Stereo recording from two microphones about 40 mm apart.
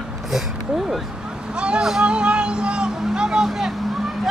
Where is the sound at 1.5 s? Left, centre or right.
Right.